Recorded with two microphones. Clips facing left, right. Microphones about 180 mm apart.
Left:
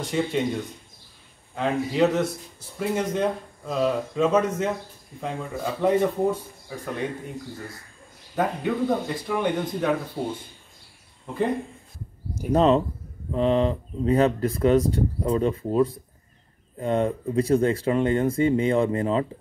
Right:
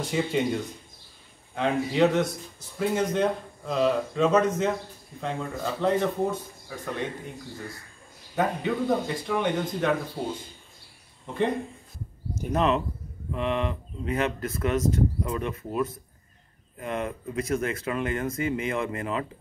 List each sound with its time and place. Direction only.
0.0 s speech: centre (ahead or behind)
8.4 s speech: centre (ahead or behind)
11.2 s speech: 5° left (ahead or behind)
12.5 s speech: 30° left (ahead or behind)